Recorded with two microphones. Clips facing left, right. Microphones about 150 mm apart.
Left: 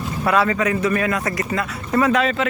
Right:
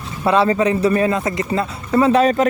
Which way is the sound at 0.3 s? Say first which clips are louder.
Right 4 dB; 30° right (ahead or behind).